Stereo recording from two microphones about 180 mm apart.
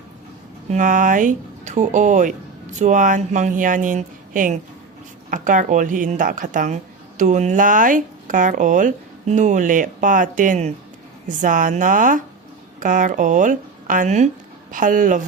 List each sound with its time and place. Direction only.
0.7 s speech: 45° right (ahead or behind)